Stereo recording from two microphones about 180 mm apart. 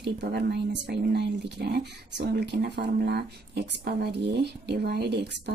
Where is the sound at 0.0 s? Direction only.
70° right (ahead or behind).